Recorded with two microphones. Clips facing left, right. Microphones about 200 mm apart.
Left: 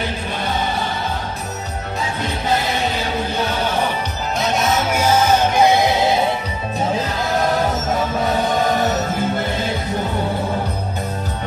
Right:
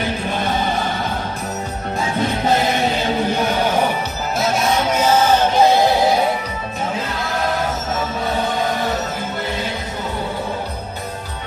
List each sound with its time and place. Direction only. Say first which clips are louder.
4.4 s music: right 1 dB; centre (ahead or behind); by 6.0 s 20° left (ahead or behind)